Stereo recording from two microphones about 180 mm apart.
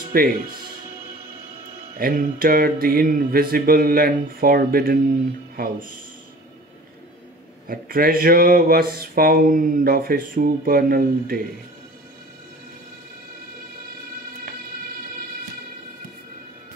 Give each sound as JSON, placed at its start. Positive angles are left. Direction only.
{"t": 0.0, "sound": "speech", "side_deg": -55}
{"t": 2.0, "sound": "speech", "side_deg": -55}
{"t": 7.6, "sound": "speech", "side_deg": -55}